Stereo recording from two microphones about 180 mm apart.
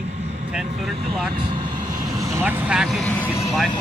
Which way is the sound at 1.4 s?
25° right (ahead or behind).